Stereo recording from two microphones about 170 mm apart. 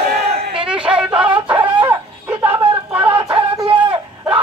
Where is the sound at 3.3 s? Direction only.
30° right (ahead or behind).